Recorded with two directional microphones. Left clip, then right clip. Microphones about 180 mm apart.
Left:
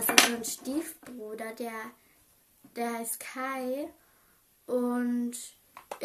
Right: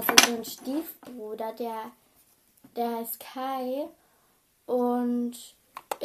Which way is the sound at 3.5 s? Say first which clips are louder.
Right 4 dB; centre (ahead or behind).